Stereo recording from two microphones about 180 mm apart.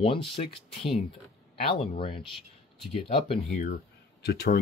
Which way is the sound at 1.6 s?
30° left (ahead or behind).